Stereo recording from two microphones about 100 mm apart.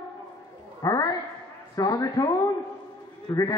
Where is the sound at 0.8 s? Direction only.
40° left (ahead or behind).